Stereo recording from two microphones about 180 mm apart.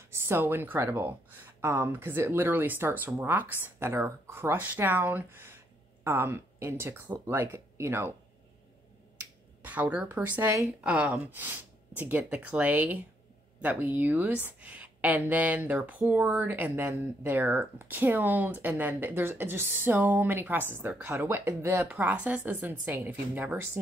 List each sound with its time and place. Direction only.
0.3 s speech: 10° right (ahead or behind)
9.6 s speech: 10° right (ahead or behind)